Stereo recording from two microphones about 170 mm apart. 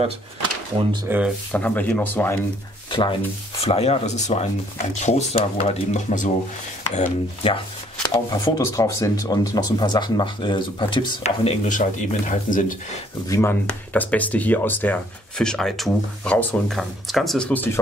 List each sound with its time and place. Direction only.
1.0 s speech: 10° right (ahead or behind)
1.5 s speech: 10° left (ahead or behind)
2.9 s rub: 30° left (ahead or behind)
3.6 s speech: 35° left (ahead or behind)
8.0 s speech: 25° left (ahead or behind)
11.2 s speech: 40° left (ahead or behind)
13.3 s speech: 15° left (ahead or behind)